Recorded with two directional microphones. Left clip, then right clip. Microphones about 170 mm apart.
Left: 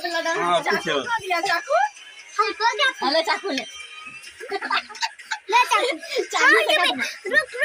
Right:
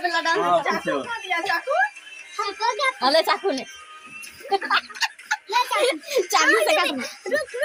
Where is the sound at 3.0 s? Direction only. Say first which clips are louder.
Right 2 dB; 55° right (ahead or behind).